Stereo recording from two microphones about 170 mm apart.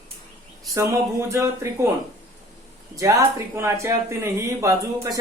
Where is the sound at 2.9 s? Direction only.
20° right (ahead or behind).